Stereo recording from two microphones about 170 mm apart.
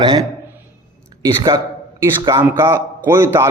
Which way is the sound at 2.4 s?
15° right (ahead or behind).